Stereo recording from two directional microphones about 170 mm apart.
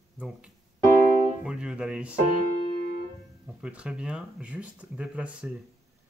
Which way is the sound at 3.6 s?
5° right (ahead or behind).